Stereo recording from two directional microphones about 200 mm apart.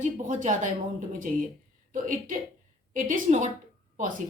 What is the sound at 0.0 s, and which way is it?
A woman's voice, 35° right (ahead or behind).